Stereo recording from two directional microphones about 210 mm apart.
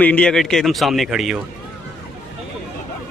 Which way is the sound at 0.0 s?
5° left (ahead or behind).